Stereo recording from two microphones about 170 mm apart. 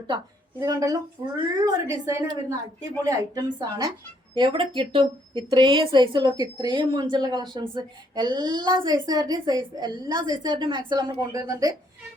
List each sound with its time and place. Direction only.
0.6 s speech: 20° right (ahead or behind)